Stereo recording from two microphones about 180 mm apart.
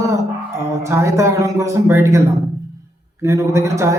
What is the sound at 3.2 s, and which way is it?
Speech, 15° right (ahead or behind).